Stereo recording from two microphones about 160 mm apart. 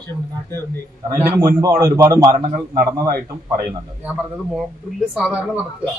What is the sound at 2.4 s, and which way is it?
Speech, 55° right (ahead or behind).